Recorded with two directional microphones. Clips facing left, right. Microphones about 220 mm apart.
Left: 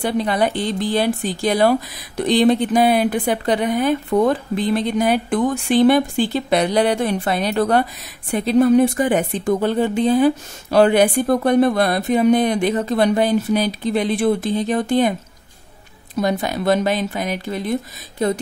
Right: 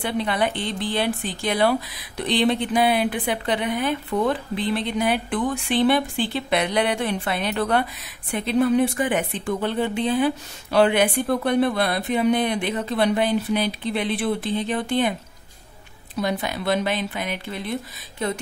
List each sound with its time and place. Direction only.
0.0 s a woman's voice: 40° left (ahead or behind)
16.2 s a woman's voice: 45° left (ahead or behind)